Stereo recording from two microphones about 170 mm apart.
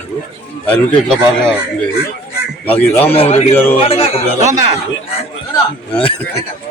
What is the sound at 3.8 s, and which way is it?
Speech, 35° left (ahead or behind).